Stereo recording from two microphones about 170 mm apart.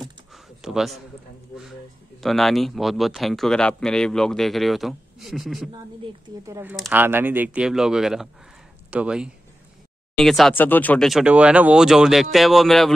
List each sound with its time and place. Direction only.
0.0 s a sound: centre (ahead or behind)
2.2 s speech: centre (ahead or behind)
6.4 s speech: 15° right (ahead or behind); by 12.9 s centre (ahead or behind)